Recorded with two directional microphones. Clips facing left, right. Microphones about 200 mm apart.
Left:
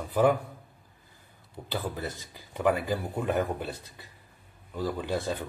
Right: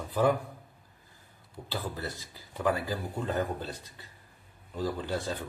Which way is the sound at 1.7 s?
15° left (ahead or behind).